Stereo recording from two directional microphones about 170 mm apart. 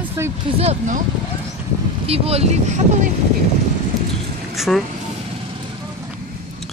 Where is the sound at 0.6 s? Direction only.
40° right (ahead or behind).